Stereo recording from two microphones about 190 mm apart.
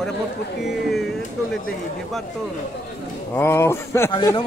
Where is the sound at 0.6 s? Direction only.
Centre (ahead or behind).